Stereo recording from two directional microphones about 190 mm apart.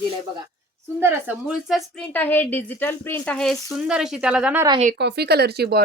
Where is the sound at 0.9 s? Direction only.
10° right (ahead or behind).